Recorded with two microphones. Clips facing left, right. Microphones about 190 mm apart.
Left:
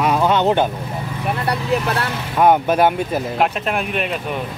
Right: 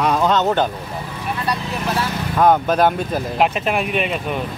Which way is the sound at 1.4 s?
60° left (ahead or behind).